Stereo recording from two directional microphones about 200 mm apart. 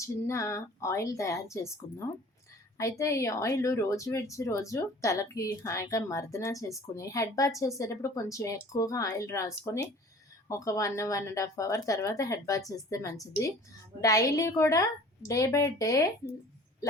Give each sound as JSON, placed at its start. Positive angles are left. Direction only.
{"t": 0.0, "sound": "speech", "side_deg": 15}